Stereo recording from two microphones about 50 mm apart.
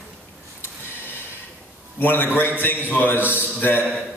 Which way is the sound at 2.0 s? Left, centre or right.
Left.